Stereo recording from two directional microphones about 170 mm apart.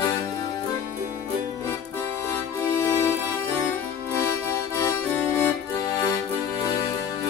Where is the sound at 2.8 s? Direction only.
15° left (ahead or behind).